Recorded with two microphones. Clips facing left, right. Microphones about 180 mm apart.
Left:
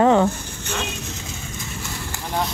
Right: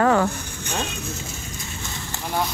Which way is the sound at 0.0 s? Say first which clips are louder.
Left 3 dB; 20° left (ahead or behind).